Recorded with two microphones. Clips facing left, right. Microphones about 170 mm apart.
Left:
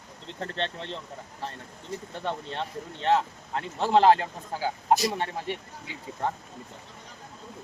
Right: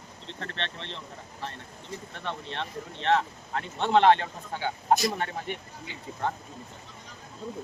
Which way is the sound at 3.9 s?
35° left (ahead or behind).